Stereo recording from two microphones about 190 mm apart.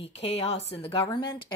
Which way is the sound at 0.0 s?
35° left (ahead or behind).